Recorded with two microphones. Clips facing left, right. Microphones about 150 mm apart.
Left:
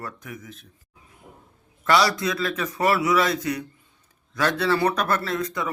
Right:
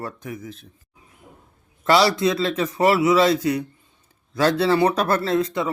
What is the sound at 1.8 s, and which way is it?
A man's voice, 30° right (ahead or behind).